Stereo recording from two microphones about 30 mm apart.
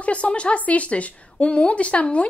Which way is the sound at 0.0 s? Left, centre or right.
Left.